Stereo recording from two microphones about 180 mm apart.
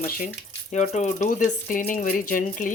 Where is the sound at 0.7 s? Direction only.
40° left (ahead or behind).